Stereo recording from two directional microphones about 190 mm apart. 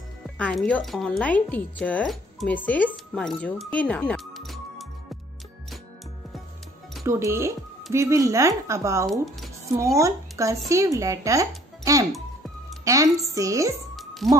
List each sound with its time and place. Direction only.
0.4 s speech: 5° left (ahead or behind)
7.1 s speech: 15° right (ahead or behind)
13.9 s music: centre (ahead or behind)